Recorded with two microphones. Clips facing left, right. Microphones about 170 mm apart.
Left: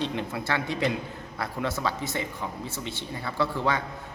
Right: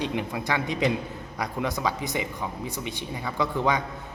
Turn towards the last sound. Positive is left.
turn(degrees=-15)  # may be behind; listen again after turning